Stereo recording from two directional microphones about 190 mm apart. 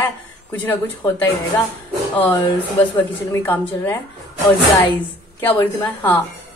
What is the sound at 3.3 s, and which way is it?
Speech, 10° left (ahead or behind).